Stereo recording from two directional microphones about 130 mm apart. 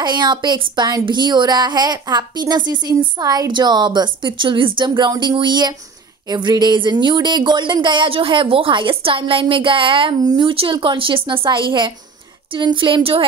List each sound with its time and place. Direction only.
0.0 s speech: 35° right (ahead or behind)